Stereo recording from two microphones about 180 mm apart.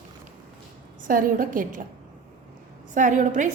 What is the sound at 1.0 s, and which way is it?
Speech, 50° right (ahead or behind).